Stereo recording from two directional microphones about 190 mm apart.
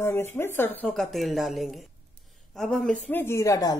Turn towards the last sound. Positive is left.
turn(degrees=20)  # may be behind; listen again after turning